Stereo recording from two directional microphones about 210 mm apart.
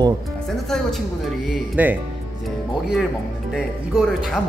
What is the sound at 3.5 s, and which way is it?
Speech, centre (ahead or behind).